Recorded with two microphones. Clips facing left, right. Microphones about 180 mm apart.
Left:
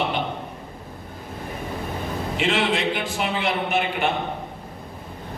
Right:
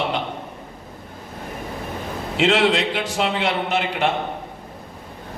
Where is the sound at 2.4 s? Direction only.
85° right.